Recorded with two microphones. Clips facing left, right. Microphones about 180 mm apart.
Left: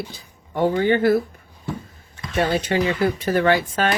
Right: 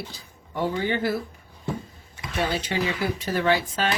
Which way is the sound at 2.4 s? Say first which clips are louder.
Left 6 dB; 50° left (ahead or behind).